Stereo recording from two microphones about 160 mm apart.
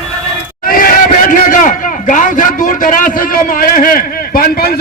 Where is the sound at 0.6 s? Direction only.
60° left (ahead or behind).